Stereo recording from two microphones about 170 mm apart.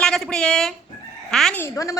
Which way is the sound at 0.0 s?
5° left (ahead or behind).